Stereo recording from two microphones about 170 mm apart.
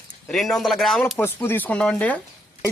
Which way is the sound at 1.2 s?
10° left (ahead or behind).